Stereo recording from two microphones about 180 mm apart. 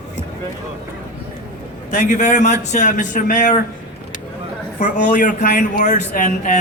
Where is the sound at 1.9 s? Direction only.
45° left (ahead or behind).